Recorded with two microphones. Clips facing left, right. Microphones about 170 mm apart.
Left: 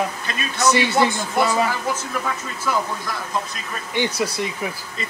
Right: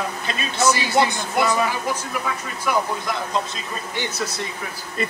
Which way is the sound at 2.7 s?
20° right (ahead or behind).